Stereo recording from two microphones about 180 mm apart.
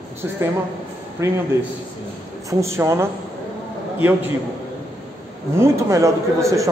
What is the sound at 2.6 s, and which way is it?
Speech, 15° right (ahead or behind).